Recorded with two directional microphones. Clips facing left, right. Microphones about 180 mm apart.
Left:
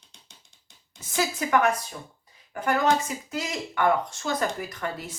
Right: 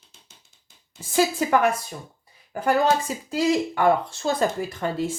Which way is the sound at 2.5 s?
30° right (ahead or behind).